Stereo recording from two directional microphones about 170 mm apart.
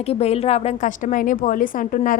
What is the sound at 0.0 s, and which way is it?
A woman's voice, 35° left (ahead or behind).